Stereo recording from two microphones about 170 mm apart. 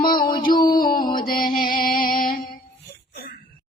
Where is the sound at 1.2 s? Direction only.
55° left (ahead or behind).